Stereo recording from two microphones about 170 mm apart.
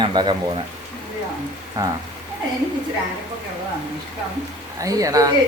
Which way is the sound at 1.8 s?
20° right (ahead or behind).